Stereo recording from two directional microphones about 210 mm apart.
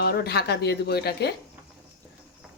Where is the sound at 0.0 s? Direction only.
50° left (ahead or behind).